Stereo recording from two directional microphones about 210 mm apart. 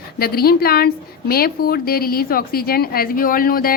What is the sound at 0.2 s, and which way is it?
A woman's voice, 45° left (ahead or behind).